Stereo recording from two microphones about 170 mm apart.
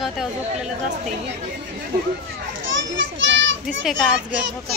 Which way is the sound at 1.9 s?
60° right (ahead or behind).